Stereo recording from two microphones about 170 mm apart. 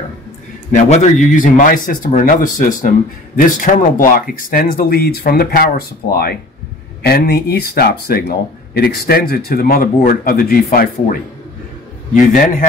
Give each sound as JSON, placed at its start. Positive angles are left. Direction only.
{"t": 0.7, "sound": "a man's voice", "side_deg": 45}